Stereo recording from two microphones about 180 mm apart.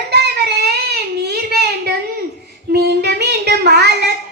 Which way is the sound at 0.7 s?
65° right (ahead or behind).